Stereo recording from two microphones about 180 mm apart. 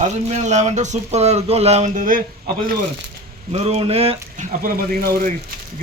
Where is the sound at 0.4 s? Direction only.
40° right (ahead or behind).